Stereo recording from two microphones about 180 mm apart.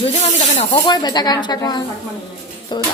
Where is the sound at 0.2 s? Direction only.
35° left (ahead or behind).